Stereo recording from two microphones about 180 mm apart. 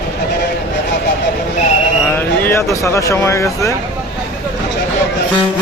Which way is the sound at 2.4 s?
15° left (ahead or behind).